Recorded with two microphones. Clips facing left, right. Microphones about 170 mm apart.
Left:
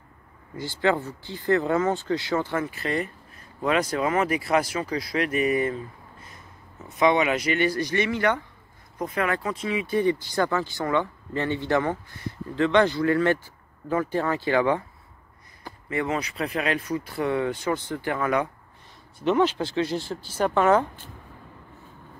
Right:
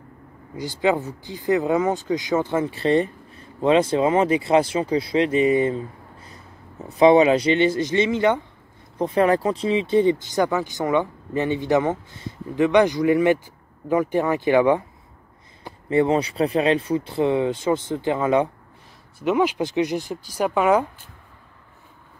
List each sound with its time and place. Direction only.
0.6 s speech: 15° right (ahead or behind)
6.8 s speech: 35° right (ahead or behind); by 14.8 s 15° right (ahead or behind)
15.6 s speech: 30° right (ahead or behind)
19.1 s speech: 10° right (ahead or behind)